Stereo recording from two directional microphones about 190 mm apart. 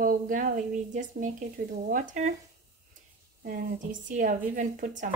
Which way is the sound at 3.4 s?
45° right (ahead or behind).